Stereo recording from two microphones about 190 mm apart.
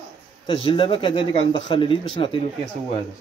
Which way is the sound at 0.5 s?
25° left (ahead or behind).